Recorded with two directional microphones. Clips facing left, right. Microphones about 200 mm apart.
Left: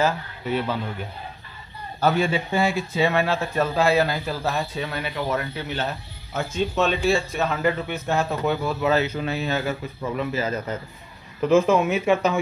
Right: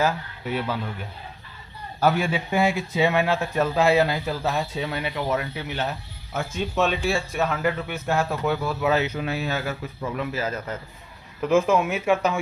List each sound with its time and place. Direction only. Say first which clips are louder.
0.0 s a man's voice: left 1 dB; 10° right (ahead or behind)
2.0 s speech: left 1 dB; 10° right (ahead or behind)